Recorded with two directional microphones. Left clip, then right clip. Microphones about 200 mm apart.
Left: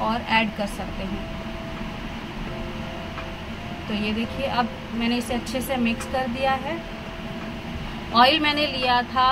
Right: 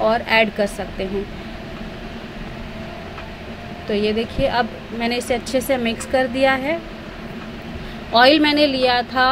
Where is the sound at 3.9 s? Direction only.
30° right (ahead or behind).